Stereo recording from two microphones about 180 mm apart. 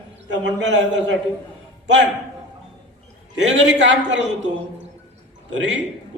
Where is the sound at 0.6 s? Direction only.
75° right (ahead or behind).